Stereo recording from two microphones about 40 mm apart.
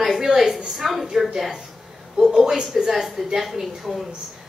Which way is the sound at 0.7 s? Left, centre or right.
Centre.